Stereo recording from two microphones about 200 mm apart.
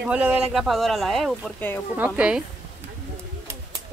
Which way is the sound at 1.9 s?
5° right (ahead or behind).